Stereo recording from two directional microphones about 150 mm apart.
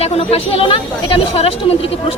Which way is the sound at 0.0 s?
40° left (ahead or behind).